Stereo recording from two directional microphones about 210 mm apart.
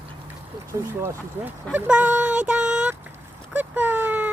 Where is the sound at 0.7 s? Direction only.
10° right (ahead or behind).